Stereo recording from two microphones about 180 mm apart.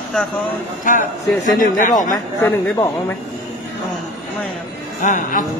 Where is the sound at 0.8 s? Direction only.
45° left (ahead or behind).